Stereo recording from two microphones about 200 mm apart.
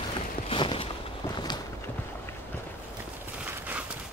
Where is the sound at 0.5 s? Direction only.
25° left (ahead or behind).